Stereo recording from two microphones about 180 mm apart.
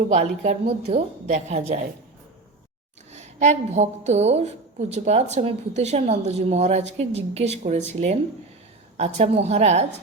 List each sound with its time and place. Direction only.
0.1 s a woman's voice: 40° right (ahead or behind)
3.1 s a woman's voice: 40° right (ahead or behind)
9.0 s a woman's voice: 35° right (ahead or behind)